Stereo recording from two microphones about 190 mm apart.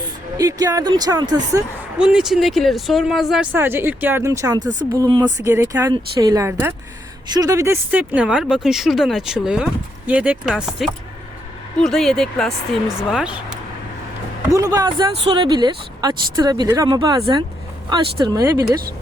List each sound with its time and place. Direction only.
0.3 s speech: 20° right (ahead or behind)
2.0 s speech: 5° right (ahead or behind)
14.5 s speech: 20° right (ahead or behind)